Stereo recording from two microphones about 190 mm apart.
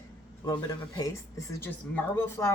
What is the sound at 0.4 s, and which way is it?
Speech, 20° left (ahead or behind).